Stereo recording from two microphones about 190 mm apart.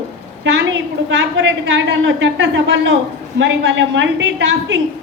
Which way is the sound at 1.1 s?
75° right (ahead or behind).